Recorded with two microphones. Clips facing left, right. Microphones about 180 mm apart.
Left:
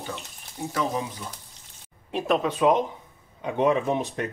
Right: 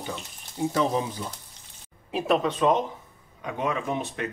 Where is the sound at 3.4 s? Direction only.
35° left (ahead or behind).